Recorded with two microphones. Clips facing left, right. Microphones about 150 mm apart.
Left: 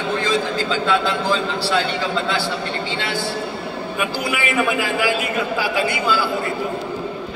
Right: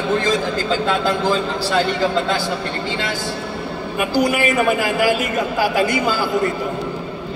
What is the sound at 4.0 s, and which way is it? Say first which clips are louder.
A man's voice: right 7 dB; 40° right (ahead or behind).